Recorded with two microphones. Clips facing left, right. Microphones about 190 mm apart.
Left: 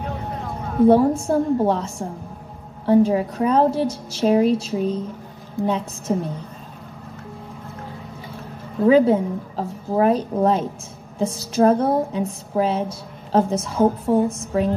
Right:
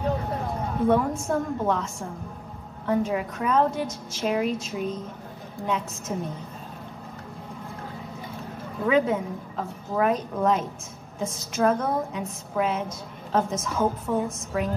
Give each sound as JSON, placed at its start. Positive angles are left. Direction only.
{"t": 0.8, "sound": "a woman's voice", "side_deg": 30}
{"t": 6.1, "sound": "a woman's voice", "side_deg": 35}
{"t": 8.8, "sound": "a woman's voice", "side_deg": 35}